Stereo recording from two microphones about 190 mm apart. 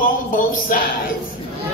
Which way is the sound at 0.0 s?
45° left (ahead or behind).